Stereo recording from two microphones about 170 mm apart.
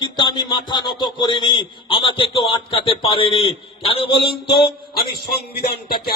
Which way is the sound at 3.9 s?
35° left (ahead or behind).